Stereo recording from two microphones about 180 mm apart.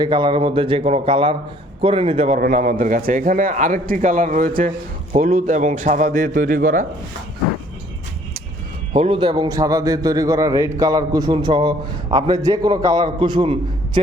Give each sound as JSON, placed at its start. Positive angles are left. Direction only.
{"t": 0.0, "sound": "a man's voice", "side_deg": -25}
{"t": 8.9, "sound": "a man's voice", "side_deg": -30}